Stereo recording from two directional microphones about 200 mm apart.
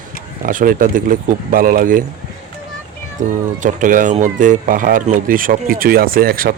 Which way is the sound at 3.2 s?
40° right (ahead or behind).